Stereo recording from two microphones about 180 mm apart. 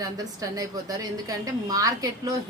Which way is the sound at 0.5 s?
20° right (ahead or behind).